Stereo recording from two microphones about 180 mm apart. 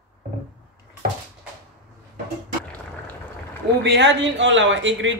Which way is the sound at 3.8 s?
80° right.